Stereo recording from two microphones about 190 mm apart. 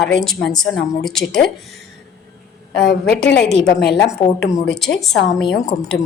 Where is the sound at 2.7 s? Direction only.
60° left (ahead or behind).